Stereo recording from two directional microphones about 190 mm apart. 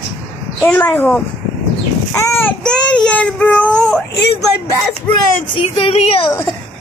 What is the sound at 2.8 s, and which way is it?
Baby cry, 5° left (ahead or behind).